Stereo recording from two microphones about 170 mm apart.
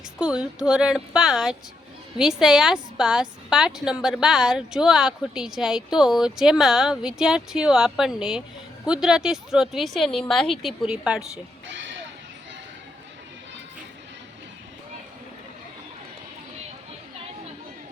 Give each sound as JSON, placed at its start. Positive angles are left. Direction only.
{"t": 0.2, "sound": "a woman's voice", "side_deg": -5}
{"t": 11.7, "sound": "speech", "side_deg": -90}